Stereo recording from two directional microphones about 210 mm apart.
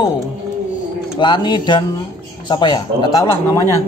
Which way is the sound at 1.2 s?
20° left (ahead or behind).